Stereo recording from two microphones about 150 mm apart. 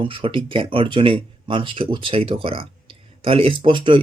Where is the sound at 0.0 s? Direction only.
35° right (ahead or behind).